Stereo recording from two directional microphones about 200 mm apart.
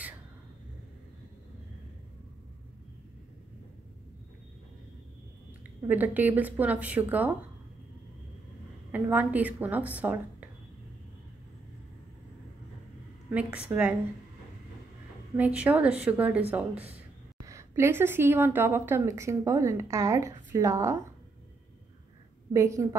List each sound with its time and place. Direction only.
5.8 s a woman's voice: 10° right (ahead or behind)
8.9 s a woman's voice: 10° right (ahead or behind)
13.3 s a woman's voice: 5° right (ahead or behind)
15.3 s a woman's voice: 5° right (ahead or behind)
22.5 s a woman's voice: 15° right (ahead or behind)